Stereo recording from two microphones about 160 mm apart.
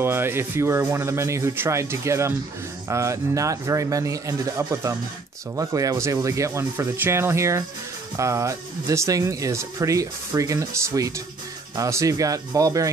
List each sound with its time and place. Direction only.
0.0 s speech: 15° right (ahead or behind)